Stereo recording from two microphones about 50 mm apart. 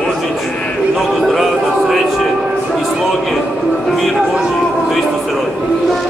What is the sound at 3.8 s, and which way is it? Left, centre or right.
Speech, centre.